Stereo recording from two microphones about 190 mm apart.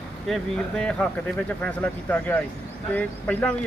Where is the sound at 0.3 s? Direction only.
Centre (ahead or behind).